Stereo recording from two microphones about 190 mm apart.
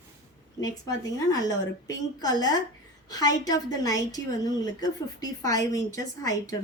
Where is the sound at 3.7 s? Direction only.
20° left (ahead or behind).